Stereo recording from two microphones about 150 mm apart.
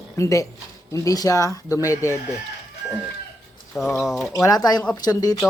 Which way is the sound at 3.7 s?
Centre (ahead or behind).